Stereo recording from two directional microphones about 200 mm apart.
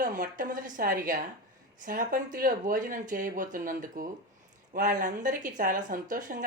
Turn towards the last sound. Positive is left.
turn(degrees=-40)  # may be behind; listen again after turning